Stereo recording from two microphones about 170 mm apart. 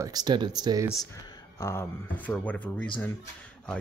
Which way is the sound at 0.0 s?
25° right (ahead or behind).